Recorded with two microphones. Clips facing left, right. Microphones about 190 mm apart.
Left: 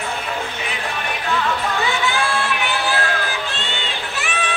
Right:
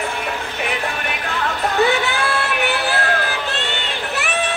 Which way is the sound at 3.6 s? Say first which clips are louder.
Right 3 dB; 65° right (ahead or behind).